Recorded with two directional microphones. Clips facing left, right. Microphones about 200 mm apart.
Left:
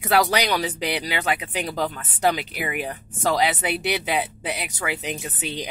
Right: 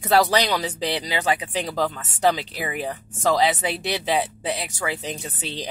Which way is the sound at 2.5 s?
30° right (ahead or behind).